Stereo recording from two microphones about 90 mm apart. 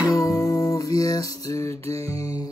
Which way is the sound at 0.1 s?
35° left (ahead or behind).